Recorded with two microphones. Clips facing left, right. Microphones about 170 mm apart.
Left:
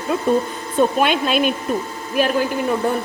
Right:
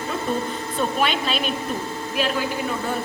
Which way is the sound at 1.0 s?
55° left (ahead or behind).